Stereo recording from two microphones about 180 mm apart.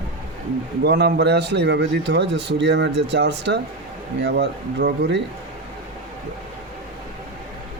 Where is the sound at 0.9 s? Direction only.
70° right (ahead or behind).